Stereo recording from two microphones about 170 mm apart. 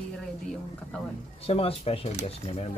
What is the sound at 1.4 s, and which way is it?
Speech, 35° left (ahead or behind).